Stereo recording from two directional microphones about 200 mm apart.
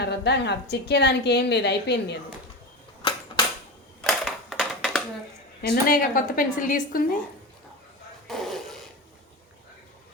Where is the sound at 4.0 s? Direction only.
Centre (ahead or behind).